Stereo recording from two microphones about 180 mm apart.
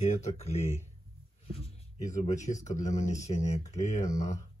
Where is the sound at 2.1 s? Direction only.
45° left (ahead or behind).